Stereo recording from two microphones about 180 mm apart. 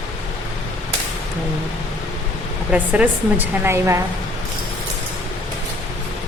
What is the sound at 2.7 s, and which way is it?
A woman's voice, 10° right (ahead or behind).